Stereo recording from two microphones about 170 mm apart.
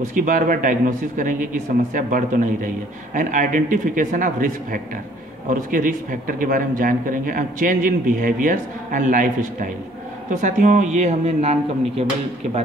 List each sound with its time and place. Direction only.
0.2 s speech: 55° right (ahead or behind)
5.5 s speech: 50° right (ahead or behind)